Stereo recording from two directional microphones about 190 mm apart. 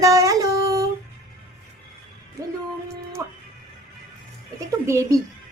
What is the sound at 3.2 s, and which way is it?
Speech, 15° right (ahead or behind).